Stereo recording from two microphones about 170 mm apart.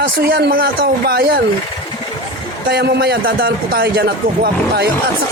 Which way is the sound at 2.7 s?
70° right (ahead or behind).